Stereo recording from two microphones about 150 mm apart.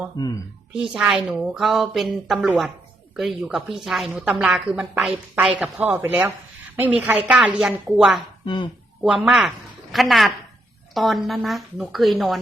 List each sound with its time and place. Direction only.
0.2 s speech: 25° left (ahead or behind)
0.7 s a woman's voice: 5° right (ahead or behind)
8.4 s speech: 35° left (ahead or behind)
9.0 s a woman's voice: 5° right (ahead or behind)